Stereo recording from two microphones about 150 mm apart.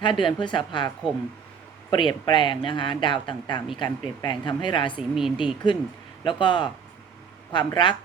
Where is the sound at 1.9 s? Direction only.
30° left (ahead or behind).